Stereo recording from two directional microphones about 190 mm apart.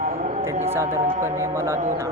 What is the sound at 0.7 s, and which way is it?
Speech, 15° right (ahead or behind).